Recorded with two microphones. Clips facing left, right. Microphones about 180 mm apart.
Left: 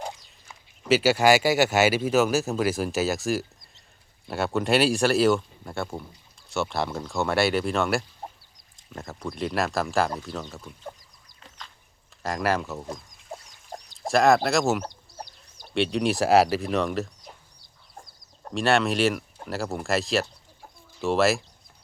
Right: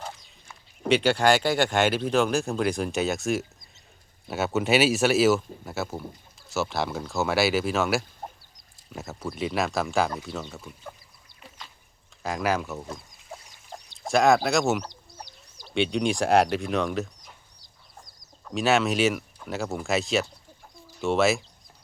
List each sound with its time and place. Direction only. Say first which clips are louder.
0.9 s speech: left 2 dB; 5° left (ahead or behind)
11.3 s duck: right 1 dB; 5° right (ahead or behind)
12.2 s speech: left 1 dB; centre (ahead or behind)
14.1 s speech: left 1 dB; centre (ahead or behind)
14.8 s chicken: left 1 dB; 55° left (ahead or behind)
15.7 s speech: left 1 dB; centre (ahead or behind)
17.6 s chicken: left 3 dB; 55° left (ahead or behind)
18.5 s speech: even; centre (ahead or behind)